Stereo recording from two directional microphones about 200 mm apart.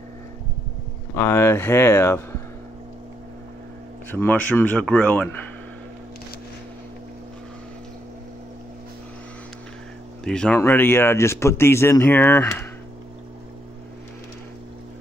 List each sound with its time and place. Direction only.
1.1 s speech: 15° left (ahead or behind)
4.1 s speech: 10° left (ahead or behind)
10.2 s speech: 5° left (ahead or behind)